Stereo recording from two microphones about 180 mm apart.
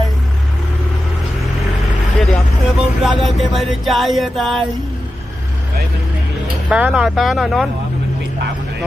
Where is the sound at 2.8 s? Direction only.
Centre (ahead or behind).